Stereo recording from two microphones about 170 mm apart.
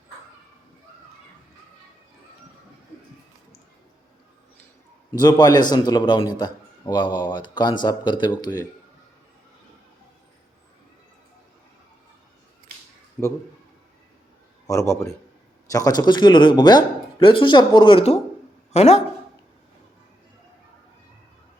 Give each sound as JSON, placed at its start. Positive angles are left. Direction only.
{"t": 5.1, "sound": "speech", "side_deg": 25}
{"t": 13.2, "sound": "a man's voice", "side_deg": 5}
{"t": 14.7, "sound": "a man's voice", "side_deg": 15}